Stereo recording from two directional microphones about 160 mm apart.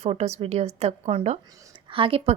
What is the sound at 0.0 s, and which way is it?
A woman's voice, 40° right (ahead or behind).